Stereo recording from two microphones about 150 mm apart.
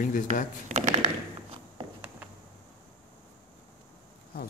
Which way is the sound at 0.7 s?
50° right (ahead or behind).